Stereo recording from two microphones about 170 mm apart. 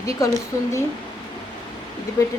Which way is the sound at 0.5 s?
20° left (ahead or behind).